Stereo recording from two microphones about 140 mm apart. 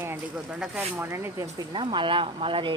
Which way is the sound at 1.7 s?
35° right (ahead or behind).